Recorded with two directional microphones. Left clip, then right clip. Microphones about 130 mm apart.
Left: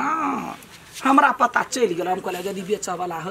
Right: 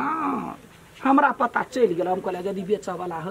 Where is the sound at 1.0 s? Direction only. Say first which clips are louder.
Left 3 dB; 5° left (ahead or behind).